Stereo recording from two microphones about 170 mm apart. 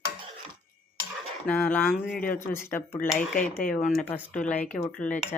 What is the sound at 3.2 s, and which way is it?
Speech, 50° left (ahead or behind).